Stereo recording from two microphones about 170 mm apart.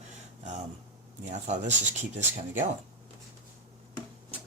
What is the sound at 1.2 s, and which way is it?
Speech, 45° right (ahead or behind).